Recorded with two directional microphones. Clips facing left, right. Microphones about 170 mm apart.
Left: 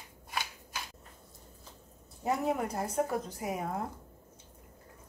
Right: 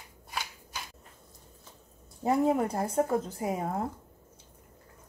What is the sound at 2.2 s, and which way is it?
A woman's voice, 30° right (ahead or behind).